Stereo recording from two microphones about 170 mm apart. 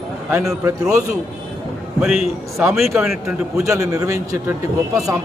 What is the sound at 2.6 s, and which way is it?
Speech, centre (ahead or behind).